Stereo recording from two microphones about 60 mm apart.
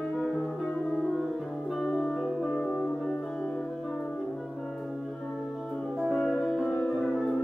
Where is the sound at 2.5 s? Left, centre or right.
Centre.